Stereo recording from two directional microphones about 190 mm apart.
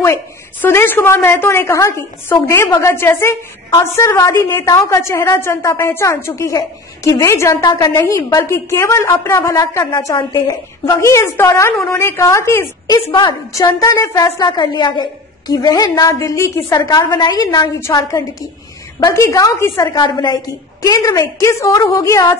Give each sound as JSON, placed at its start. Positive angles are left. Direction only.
{"t": 0.0, "sound": "a woman's voice", "side_deg": 10}